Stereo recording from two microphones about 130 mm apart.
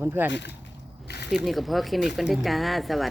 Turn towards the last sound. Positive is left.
turn(degrees=0)  # may be behind; listen again after turning